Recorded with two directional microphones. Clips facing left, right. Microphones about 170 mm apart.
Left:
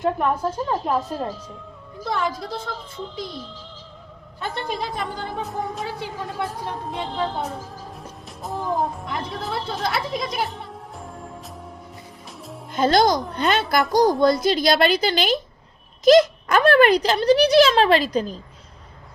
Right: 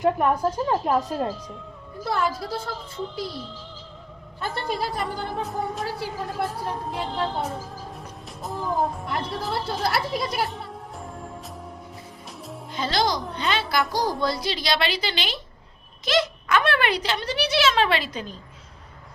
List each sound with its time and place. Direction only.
0.0 s speech: 10° right (ahead or behind)
4.5 s speech: 5° right (ahead or behind)
8.3 s music: centre (ahead or behind)
12.7 s a woman's voice: 50° left (ahead or behind)
16.5 s speech: 40° left (ahead or behind)